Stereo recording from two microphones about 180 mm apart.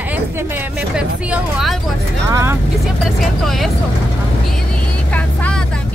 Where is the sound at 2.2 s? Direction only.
15° right (ahead or behind).